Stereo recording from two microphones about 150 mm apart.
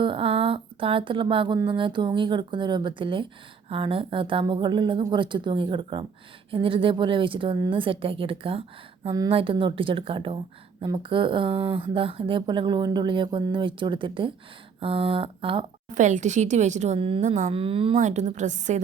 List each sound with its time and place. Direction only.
0.0 s speech: 35° right (ahead or behind)
16.0 s speech: 55° right (ahead or behind)
17.0 s speech: 35° right (ahead or behind)
17.2 s speech: 50° right (ahead or behind)
18.0 s speech: 50° right (ahead or behind)